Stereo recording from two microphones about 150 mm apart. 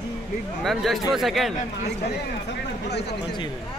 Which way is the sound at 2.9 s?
90° left.